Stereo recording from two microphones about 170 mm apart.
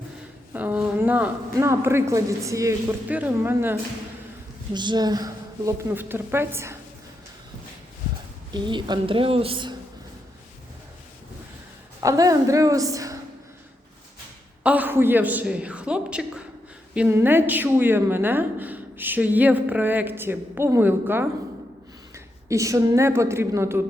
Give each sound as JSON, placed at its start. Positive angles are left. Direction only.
{"t": 0.5, "sound": "a woman's voice", "side_deg": -10}
{"t": 4.7, "sound": "a woman's voice", "side_deg": -25}
{"t": 5.9, "sound": "a woman's voice", "side_deg": -10}
{"t": 8.5, "sound": "a woman's voice", "side_deg": -25}
{"t": 11.9, "sound": "a woman's voice", "side_deg": -20}
{"t": 14.6, "sound": "a woman's voice", "side_deg": -10}